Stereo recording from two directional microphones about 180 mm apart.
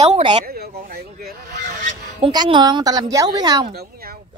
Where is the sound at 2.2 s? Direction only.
25° right (ahead or behind).